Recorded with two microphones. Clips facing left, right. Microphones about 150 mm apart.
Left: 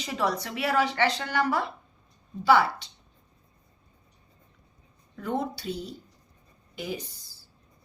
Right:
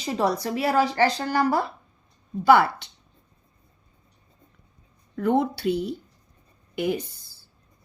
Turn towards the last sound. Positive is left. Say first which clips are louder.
# right 9 dB
turn(degrees=-60)  # may be behind; listen again after turning